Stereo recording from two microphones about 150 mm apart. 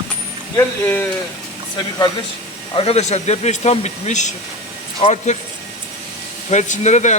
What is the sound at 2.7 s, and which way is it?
Speech, 40° left (ahead or behind).